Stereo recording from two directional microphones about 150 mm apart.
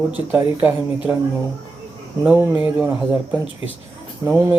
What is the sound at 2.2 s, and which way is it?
Speech, 15° right (ahead or behind).